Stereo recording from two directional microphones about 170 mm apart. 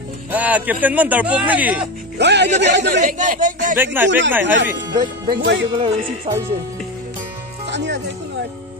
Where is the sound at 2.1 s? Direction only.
90° right.